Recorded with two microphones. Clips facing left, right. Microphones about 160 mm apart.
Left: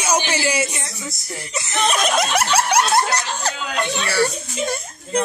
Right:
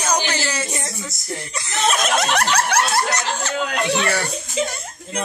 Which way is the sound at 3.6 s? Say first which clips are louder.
Right 3 dB; 60° right (ahead or behind).